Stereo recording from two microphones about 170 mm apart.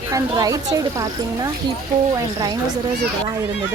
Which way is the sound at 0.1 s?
20° right (ahead or behind).